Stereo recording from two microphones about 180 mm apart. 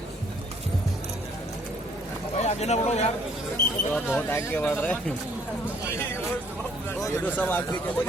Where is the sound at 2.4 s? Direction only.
40° left (ahead or behind).